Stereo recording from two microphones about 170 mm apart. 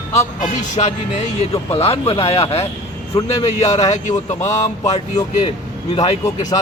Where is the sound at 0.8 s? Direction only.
35° left (ahead or behind).